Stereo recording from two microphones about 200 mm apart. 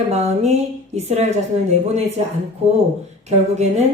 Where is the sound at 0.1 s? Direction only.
35° right (ahead or behind).